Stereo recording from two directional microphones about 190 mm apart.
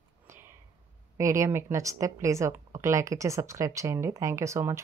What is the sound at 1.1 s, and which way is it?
A woman's voice, 15° right (ahead or behind).